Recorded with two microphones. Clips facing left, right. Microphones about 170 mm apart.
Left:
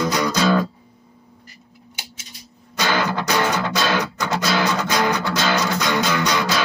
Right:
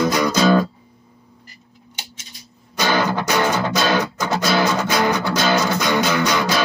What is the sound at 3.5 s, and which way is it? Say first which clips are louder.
Music: right 2 dB; 20° right (ahead or behind).